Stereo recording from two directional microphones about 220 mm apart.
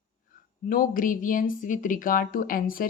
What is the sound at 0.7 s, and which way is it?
Speech, 40° left (ahead or behind).